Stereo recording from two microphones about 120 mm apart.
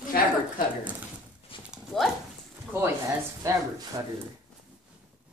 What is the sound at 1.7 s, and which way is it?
Dog, centre (ahead or behind).